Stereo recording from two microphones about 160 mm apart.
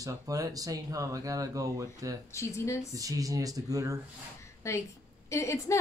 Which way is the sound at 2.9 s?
20° right (ahead or behind).